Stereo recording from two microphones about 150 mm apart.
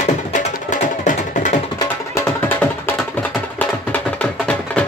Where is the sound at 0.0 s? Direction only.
55° left (ahead or behind).